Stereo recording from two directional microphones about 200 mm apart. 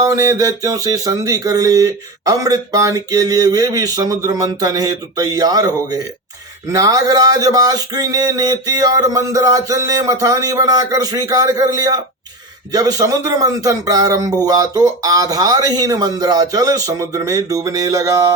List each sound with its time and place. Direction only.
0.0 s speech: 15° right (ahead or behind)